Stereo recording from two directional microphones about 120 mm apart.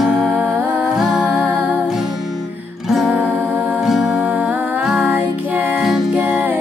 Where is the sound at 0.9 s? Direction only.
5° right (ahead or behind).